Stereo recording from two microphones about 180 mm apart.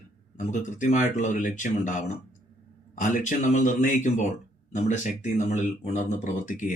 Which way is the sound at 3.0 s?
45° left (ahead or behind).